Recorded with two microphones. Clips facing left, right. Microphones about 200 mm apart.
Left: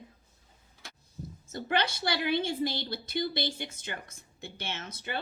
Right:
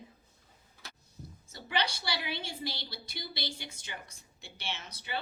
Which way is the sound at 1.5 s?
50° left (ahead or behind).